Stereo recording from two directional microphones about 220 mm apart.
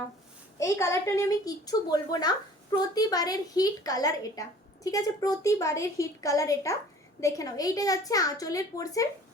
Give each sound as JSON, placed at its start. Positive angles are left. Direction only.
{"t": 0.6, "sound": "a woman's voice", "side_deg": 15}